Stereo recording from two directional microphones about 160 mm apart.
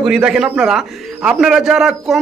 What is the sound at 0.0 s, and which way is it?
A man's voice, 5° right (ahead or behind).